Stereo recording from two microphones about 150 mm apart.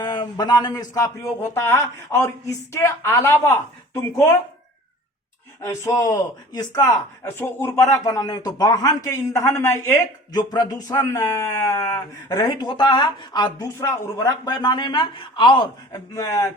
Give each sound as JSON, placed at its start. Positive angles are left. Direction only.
{"t": 0.0, "sound": "speech", "side_deg": 30}
{"t": 5.6, "sound": "speech", "side_deg": 20}